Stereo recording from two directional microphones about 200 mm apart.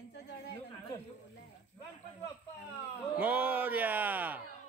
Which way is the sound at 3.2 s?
5° right (ahead or behind).